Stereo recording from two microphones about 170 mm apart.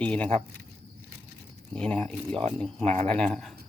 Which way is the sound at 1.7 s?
5° left (ahead or behind).